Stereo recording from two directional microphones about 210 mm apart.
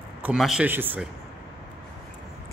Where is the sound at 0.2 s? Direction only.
5° right (ahead or behind).